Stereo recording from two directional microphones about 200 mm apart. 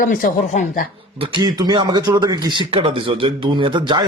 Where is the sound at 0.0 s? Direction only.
40° left (ahead or behind).